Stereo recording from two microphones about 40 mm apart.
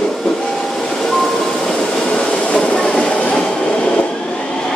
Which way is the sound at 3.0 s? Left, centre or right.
Left.